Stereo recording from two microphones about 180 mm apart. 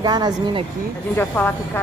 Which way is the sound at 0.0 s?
25° right (ahead or behind).